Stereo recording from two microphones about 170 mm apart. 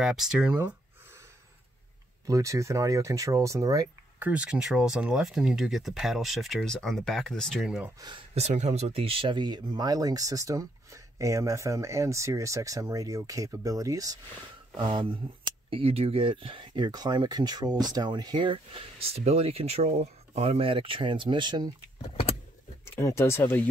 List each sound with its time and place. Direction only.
0.0 s speech: 5° right (ahead or behind)
2.2 s speech: 20° right (ahead or behind)
4.2 s speech: 5° right (ahead or behind)
8.0 s speech: 25° right (ahead or behind)
8.4 s speech: 40° right (ahead or behind)
22.0 s vehicle: 30° left (ahead or behind)
22.9 s speech: 15° left (ahead or behind)